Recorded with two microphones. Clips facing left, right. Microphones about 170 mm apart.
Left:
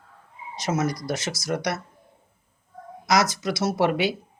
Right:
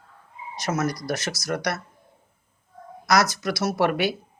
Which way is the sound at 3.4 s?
25° left (ahead or behind).